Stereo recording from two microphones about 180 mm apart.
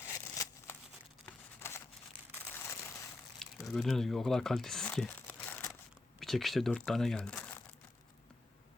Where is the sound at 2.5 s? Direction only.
15° left (ahead or behind).